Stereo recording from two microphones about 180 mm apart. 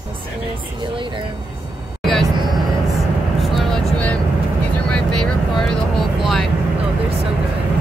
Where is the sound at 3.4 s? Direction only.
5° left (ahead or behind).